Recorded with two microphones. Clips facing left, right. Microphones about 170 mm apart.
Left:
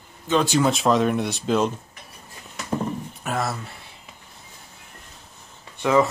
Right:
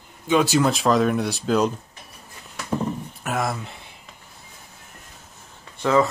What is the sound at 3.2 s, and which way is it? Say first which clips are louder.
Speech: right 1 dB; 10° right (ahead or behind).